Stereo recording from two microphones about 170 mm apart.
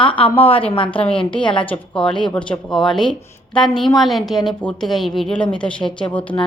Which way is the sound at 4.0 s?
Centre (ahead or behind).